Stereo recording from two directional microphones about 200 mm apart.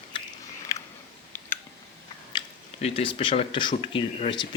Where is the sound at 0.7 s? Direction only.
15° left (ahead or behind).